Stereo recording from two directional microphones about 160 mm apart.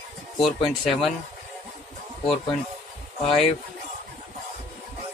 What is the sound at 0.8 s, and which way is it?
Speech, centre (ahead or behind).